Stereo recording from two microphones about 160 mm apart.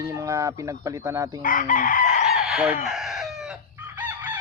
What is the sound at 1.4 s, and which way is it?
Chicken, 60° left (ahead or behind).